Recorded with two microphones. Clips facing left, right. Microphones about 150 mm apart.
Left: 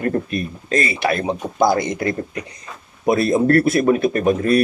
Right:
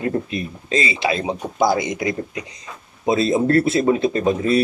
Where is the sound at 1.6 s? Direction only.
50° left (ahead or behind).